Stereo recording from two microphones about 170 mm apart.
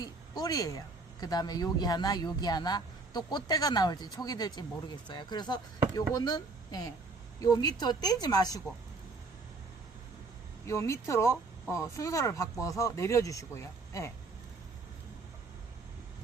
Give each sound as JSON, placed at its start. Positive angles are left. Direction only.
{"t": 0.0, "sound": "a woman's voice", "side_deg": 20}
{"t": 10.7, "sound": "speech", "side_deg": 15}